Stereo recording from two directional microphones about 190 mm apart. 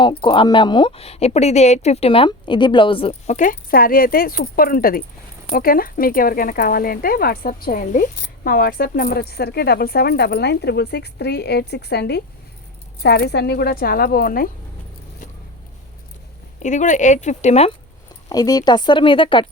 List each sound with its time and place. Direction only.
0.0 s a woman's voice: 25° left (ahead or behind); by 14.5 s 50° left (ahead or behind)
16.6 s speech: 40° left (ahead or behind)
18.3 s speech: 20° left (ahead or behind)